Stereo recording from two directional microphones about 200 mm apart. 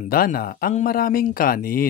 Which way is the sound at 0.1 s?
45° left (ahead or behind).